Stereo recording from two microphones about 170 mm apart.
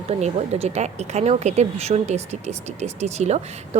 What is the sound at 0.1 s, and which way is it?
Speech, 40° right (ahead or behind).